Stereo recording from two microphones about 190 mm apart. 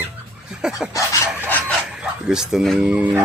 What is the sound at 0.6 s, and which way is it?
Speech, 5° right (ahead or behind).